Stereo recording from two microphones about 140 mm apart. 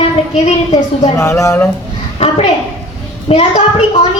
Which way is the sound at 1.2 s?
20° left (ahead or behind).